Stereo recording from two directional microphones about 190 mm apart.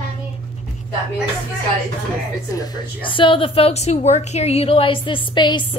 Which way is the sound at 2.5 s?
20° left (ahead or behind).